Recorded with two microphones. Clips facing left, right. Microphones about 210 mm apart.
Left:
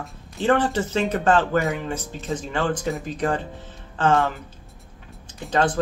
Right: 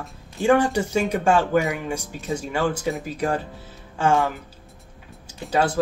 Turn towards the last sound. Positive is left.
turn(degrees=-10)  # may be behind; listen again after turning